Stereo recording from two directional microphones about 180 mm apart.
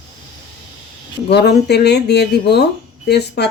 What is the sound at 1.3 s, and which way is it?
Speech, 65° left (ahead or behind).